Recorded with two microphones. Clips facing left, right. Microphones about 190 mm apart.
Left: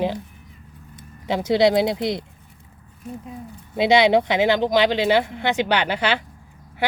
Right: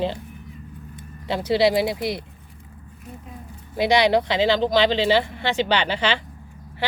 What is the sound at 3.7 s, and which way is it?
Speech, 20° left (ahead or behind).